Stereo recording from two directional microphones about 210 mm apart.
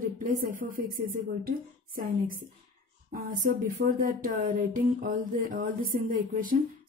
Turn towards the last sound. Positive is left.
turn(degrees=-40)  # may be behind; listen again after turning